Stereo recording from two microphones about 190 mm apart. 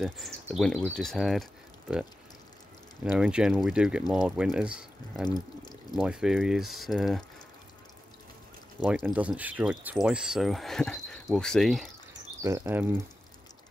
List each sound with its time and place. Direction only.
0.6 s speech: centre (ahead or behind)
3.1 s speech: 5° right (ahead or behind)
5.2 s speech: 20° left (ahead or behind)
5.9 s speech: 5° right (ahead or behind)
8.7 s speech: 5° right (ahead or behind)
12.4 s speech: 15° right (ahead or behind)